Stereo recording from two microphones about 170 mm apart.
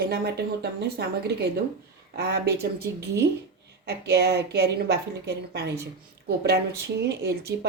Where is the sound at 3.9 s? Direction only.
75° right (ahead or behind).